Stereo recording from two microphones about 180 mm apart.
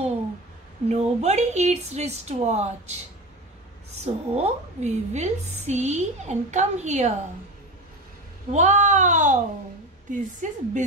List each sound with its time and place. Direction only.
0.8 s a woman's voice: 40° right (ahead or behind)
4.0 s a woman's voice: 40° right (ahead or behind)
8.5 s a woman's voice: 40° right (ahead or behind)